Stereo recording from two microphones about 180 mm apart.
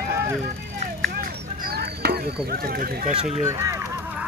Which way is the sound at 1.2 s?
60° right (ahead or behind).